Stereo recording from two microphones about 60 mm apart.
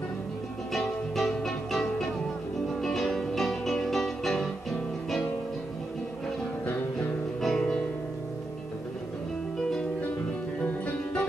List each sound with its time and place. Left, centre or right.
0.7 s music: centre
7.4 s music: centre
10.6 s music: left